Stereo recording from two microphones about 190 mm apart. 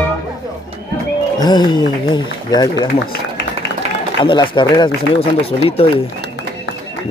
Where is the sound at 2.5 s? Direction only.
20° left (ahead or behind).